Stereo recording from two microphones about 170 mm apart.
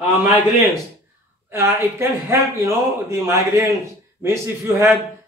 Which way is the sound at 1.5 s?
15° right (ahead or behind).